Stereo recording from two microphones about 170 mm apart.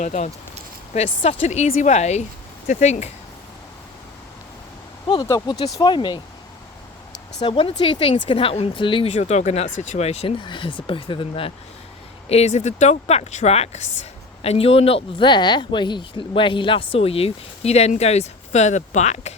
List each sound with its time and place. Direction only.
0.0 s speech: 45° left (ahead or behind)
5.2 s speech: 20° left (ahead or behind)
7.4 s speech: 30° left (ahead or behind)